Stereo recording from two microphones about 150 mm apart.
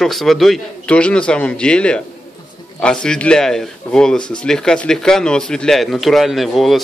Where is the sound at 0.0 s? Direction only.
Centre (ahead or behind).